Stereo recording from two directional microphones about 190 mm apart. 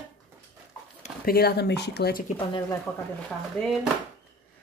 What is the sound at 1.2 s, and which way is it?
Speech, 55° left (ahead or behind).